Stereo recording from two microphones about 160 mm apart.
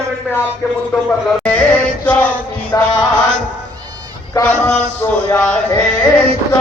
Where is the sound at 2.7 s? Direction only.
25° left (ahead or behind).